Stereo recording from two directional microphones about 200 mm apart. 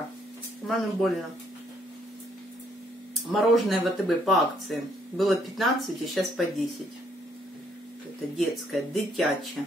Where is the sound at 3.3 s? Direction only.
Centre (ahead or behind).